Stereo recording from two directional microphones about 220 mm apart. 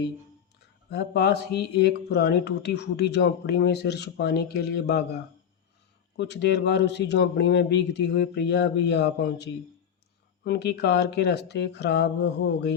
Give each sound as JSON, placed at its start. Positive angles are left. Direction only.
{"t": 0.9, "sound": "speech", "side_deg": 45}